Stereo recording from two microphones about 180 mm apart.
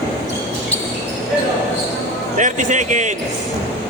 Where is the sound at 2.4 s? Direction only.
45° right (ahead or behind).